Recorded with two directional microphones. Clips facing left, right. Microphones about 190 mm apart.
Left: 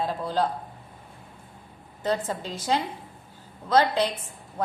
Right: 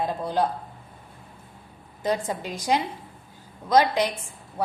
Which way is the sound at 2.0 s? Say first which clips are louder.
Right 1 dB; 15° right (ahead or behind).